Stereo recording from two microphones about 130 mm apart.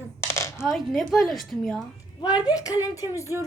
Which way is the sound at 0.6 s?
Centre (ahead or behind).